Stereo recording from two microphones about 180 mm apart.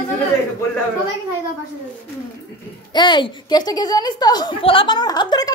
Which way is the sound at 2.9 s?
25° left (ahead or behind).